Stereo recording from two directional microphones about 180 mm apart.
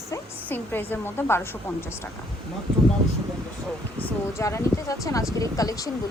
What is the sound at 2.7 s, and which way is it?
Speech, 30° right (ahead or behind).